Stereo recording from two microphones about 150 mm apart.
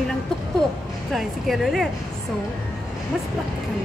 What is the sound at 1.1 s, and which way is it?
Speech, centre (ahead or behind).